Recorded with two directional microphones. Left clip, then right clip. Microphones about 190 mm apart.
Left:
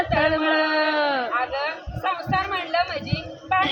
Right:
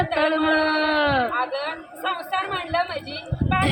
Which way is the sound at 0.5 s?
50° right (ahead or behind).